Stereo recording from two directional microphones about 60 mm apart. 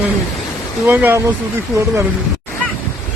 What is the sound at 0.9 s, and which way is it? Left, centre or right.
Speech, right.